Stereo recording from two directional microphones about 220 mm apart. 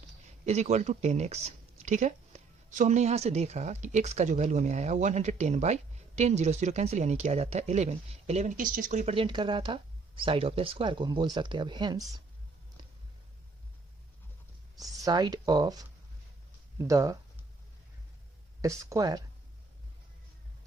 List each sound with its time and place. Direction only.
0.4 s speech: 30° right (ahead or behind)
14.8 s speech: 15° right (ahead or behind)
18.6 s speech: 15° right (ahead or behind)